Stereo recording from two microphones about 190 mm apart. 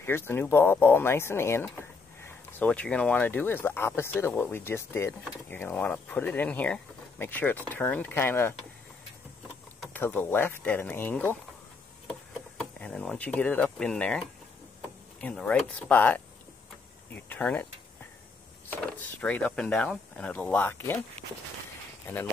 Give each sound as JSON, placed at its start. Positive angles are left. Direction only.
{"t": 0.0, "sound": "speech", "side_deg": 10}
{"t": 9.9, "sound": "speech", "side_deg": 10}
{"t": 12.1, "sound": "a sound", "side_deg": 5}
{"t": 15.1, "sound": "speech", "side_deg": 5}
{"t": 19.2, "sound": "speech", "side_deg": 5}